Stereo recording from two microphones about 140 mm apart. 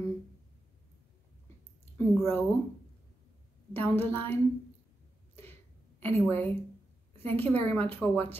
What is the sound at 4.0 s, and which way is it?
Speech, 15° left (ahead or behind).